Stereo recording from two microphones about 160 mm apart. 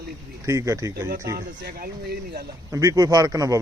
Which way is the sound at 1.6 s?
70° right (ahead or behind).